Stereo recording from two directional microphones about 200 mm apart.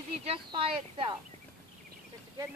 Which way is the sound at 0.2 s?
30° right (ahead or behind).